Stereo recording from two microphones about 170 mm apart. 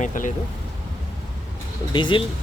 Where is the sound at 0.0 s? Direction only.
50° left (ahead or behind).